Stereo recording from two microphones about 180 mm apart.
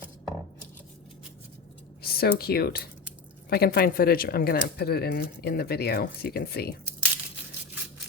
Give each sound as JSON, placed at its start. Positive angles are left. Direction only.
{"t": 2.0, "sound": "speech", "side_deg": 60}